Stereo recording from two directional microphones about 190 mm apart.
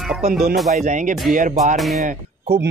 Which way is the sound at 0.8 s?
40° right (ahead or behind).